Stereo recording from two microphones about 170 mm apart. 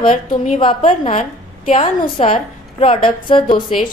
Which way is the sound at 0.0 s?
35° left (ahead or behind).